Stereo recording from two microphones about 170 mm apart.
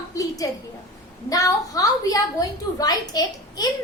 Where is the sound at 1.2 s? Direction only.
20° left (ahead or behind).